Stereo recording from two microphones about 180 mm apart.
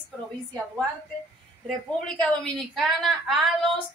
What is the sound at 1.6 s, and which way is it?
A woman's voice, 5° left (ahead or behind).